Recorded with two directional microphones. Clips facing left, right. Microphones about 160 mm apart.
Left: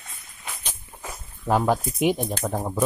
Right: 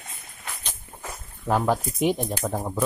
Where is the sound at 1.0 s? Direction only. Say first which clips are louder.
Left 1 dB; 5° left (ahead or behind).